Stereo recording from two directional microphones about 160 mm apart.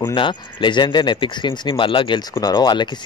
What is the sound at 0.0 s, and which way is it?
Speech, 30° left (ahead or behind).